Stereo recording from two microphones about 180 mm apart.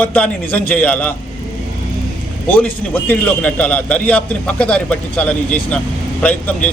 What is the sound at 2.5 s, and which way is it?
A man's voice, 10° left (ahead or behind).